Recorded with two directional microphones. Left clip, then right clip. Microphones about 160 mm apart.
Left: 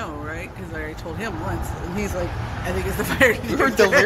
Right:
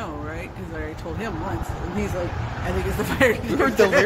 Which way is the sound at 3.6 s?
5° left (ahead or behind).